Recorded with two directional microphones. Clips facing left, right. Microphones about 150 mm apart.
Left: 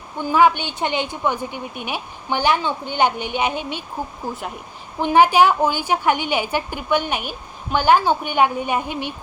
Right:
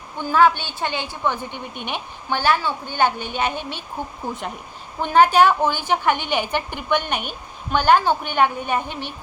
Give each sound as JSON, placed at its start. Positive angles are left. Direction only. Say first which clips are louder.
{"t": 0.2, "sound": "a woman's voice", "louder": "left 1 dB", "side_deg": 15}
{"t": 4.9, "sound": "a woman's voice", "louder": "left 1 dB", "side_deg": 10}